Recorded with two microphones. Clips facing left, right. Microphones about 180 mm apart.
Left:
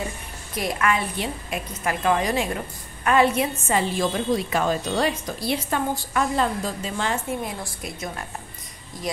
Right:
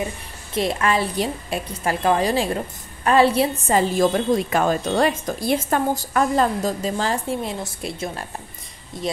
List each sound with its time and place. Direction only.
0.6 s a woman's voice: 30° right (ahead or behind)